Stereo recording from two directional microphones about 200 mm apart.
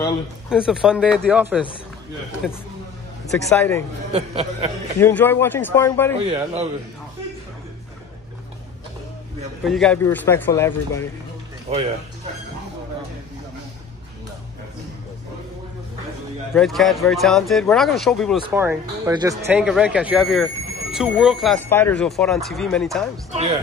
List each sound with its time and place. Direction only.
0.5 s speech: 5° right (ahead or behind)
3.3 s speech: 15° left (ahead or behind)
4.1 s speech: 30° right (ahead or behind)
5.0 s speech: 10° left (ahead or behind)
6.2 s a man's voice: 30° right (ahead or behind)
9.7 s speech: 5° left (ahead or behind)
11.7 s speech: 30° right (ahead or behind)
16.5 s speech: centre (ahead or behind)
18.5 s speech: 10° right (ahead or behind)
19.6 s speech: 5° right (ahead or behind)
21.5 s speech: 10° left (ahead or behind)
23.3 s speech: 35° right (ahead or behind)